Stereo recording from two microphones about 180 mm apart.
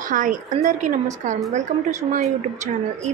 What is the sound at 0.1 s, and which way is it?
A woman's voice, 45° right (ahead or behind).